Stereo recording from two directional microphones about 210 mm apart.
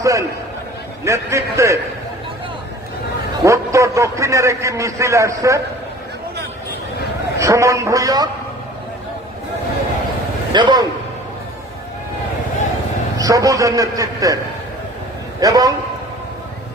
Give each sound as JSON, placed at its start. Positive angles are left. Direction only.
{"t": 0.0, "sound": "a man's voice", "side_deg": -15}
{"t": 3.4, "sound": "a man's voice", "side_deg": -15}
{"t": 7.3, "sound": "a man's voice", "side_deg": -15}
{"t": 10.5, "sound": "a man's voice", "side_deg": -20}
{"t": 13.1, "sound": "a man's voice", "side_deg": -15}
{"t": 15.4, "sound": "a man's voice", "side_deg": -15}